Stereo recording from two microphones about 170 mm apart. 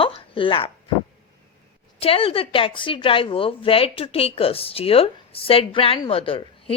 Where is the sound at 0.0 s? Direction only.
30° left (ahead or behind).